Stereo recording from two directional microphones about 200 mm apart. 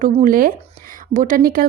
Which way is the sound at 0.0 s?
40° right (ahead or behind).